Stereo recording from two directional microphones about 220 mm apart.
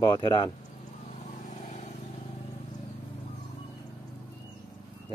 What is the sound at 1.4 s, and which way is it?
Vehicle, 35° left (ahead or behind).